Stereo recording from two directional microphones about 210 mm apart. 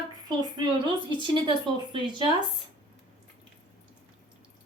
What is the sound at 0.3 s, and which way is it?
A woman's voice, 20° right (ahead or behind).